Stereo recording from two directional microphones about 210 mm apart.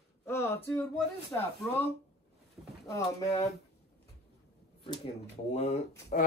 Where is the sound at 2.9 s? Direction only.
15° left (ahead or behind).